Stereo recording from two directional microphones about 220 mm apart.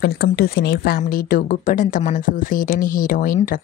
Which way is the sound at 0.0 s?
45° left (ahead or behind).